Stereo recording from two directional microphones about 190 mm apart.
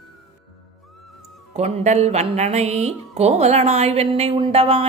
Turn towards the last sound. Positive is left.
turn(degrees=-30)  # may be behind; listen again after turning